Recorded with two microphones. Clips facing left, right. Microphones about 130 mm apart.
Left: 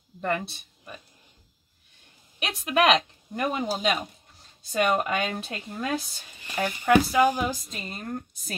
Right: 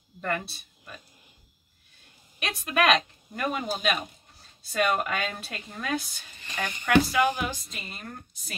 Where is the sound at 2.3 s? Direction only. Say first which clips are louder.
Left 3 dB; 20° left (ahead or behind).